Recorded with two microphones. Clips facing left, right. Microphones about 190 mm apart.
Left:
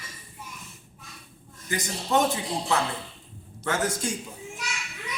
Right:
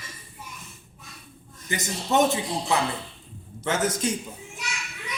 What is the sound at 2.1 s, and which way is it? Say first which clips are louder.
Speech: right 2 dB; 20° right (ahead or behind).